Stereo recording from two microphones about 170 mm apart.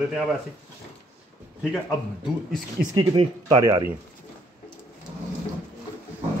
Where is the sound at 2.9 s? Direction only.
30° right (ahead or behind).